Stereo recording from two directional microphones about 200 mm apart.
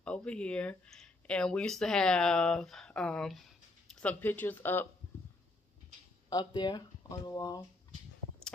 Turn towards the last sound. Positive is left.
turn(degrees=20)  # may be behind; listen again after turning